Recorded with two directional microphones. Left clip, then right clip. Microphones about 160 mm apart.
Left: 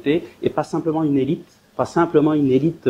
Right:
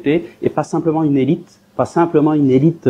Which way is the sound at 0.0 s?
15° right (ahead or behind).